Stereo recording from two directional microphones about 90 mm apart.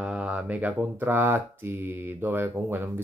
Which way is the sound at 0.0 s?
10° right (ahead or behind).